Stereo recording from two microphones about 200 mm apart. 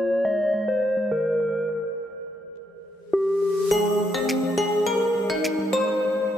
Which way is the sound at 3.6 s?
Centre (ahead or behind).